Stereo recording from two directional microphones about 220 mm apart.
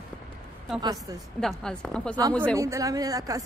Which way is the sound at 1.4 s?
Centre (ahead or behind).